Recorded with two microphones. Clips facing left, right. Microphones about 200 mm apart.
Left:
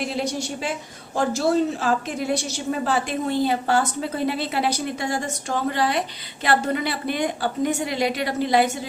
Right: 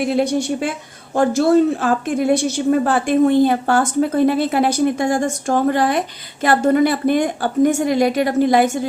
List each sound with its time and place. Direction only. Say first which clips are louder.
0.0 s a woman's voice: right 8 dB; 55° right (ahead or behind)